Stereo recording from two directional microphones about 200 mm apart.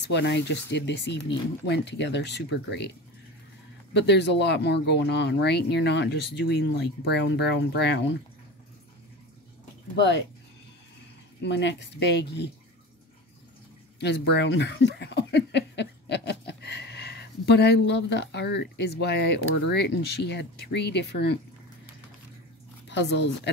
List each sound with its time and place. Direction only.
0.0 s speech: 60° left (ahead or behind)
3.9 s speech: 60° left (ahead or behind)
9.9 s speech: 60° left (ahead or behind)
11.4 s speech: 60° left (ahead or behind)
13.9 s speech: 60° left (ahead or behind)
22.8 s speech: 60° left (ahead or behind)